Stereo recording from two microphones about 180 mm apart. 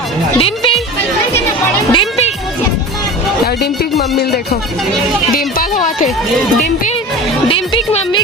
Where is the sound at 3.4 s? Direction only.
65° left (ahead or behind).